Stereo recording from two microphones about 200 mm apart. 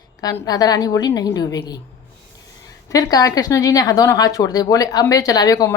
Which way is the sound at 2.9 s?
15° left (ahead or behind).